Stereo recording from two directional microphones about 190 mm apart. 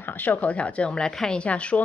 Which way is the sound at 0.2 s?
10° left (ahead or behind).